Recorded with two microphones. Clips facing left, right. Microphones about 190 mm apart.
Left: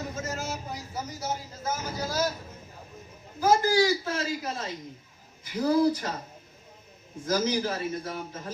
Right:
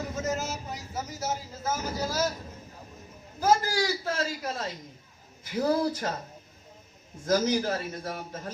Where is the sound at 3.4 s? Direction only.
50° right (ahead or behind).